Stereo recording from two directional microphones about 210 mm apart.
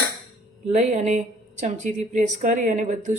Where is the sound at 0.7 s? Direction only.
30° right (ahead or behind).